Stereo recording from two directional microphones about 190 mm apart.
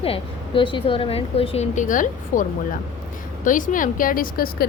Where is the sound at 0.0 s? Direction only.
30° left (ahead or behind).